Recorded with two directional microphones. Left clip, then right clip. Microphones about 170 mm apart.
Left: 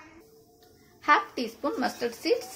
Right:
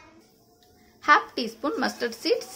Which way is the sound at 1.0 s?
15° right (ahead or behind).